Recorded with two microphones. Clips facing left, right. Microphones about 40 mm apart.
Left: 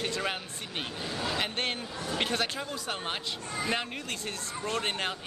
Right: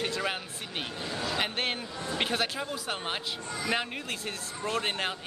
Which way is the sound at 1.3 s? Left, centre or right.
Centre.